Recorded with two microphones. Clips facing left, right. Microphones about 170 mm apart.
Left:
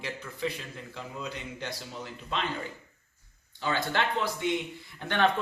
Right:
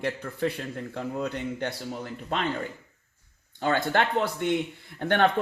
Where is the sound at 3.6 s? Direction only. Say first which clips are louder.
Right 5 dB; 55° right (ahead or behind).